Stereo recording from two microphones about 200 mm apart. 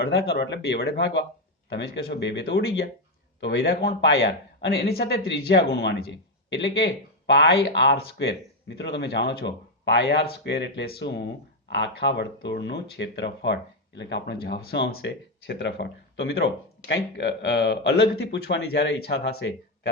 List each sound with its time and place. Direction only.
0.0 s speech: 55° left (ahead or behind)